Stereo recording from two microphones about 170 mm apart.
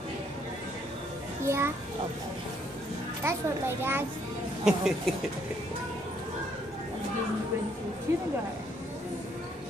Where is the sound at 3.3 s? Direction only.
15° right (ahead or behind).